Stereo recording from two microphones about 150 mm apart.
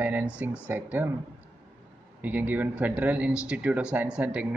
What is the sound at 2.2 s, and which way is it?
Speech, 10° right (ahead or behind).